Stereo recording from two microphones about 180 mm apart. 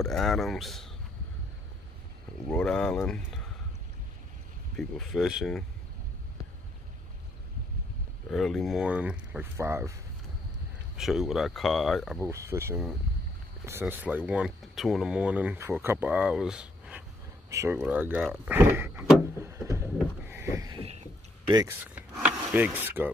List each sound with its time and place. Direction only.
0.0 s speech: centre (ahead or behind)
2.4 s speech: 5° left (ahead or behind)
4.7 s speech: centre (ahead or behind)
8.3 s speech: centre (ahead or behind); by 9.9 s 15° right (ahead or behind)
11.0 s speech: centre (ahead or behind)
12.2 s speech: 15° right (ahead or behind)
19.4 s a sound: 15° right (ahead or behind)
21.6 s speech: 10° right (ahead or behind)